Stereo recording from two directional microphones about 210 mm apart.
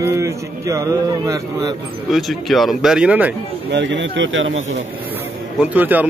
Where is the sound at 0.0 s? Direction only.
15° right (ahead or behind).